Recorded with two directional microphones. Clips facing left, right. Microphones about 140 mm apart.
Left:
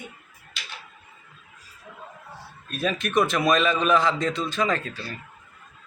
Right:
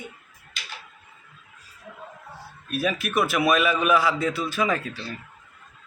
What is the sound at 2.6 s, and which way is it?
A man's voice, 5° right (ahead or behind).